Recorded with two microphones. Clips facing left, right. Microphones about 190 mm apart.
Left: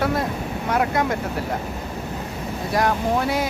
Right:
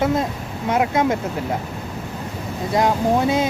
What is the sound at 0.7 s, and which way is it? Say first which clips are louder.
Speech: right 3 dB; 20° right (ahead or behind).